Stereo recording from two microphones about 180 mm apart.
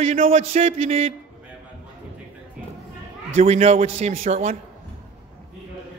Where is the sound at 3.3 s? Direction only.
35° right (ahead or behind).